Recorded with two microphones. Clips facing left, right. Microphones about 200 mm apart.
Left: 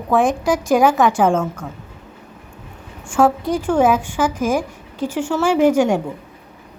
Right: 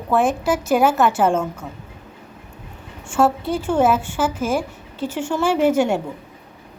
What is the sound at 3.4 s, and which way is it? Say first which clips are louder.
A woman's voice: left 2 dB; 10° left (ahead or behind).